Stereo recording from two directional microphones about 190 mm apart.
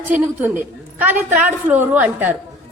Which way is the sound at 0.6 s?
10° right (ahead or behind).